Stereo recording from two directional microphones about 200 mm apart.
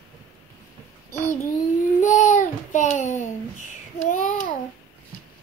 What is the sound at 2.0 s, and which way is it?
Child singing, 40° left (ahead or behind).